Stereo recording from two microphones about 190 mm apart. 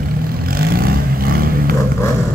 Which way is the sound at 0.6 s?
50° right (ahead or behind).